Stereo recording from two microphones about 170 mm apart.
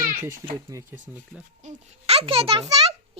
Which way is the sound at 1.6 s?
40° right (ahead or behind).